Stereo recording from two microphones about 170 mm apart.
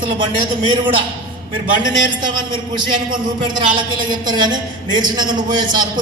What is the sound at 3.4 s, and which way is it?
A woman's voice, 30° right (ahead or behind).